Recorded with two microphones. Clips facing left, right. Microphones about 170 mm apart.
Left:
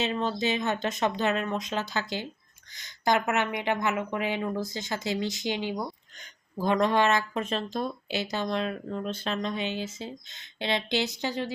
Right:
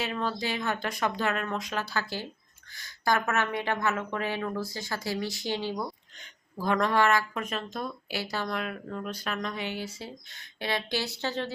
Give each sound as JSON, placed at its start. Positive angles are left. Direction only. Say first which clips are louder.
{"t": 0.0, "sound": "speech", "louder": "left 3 dB", "side_deg": 25}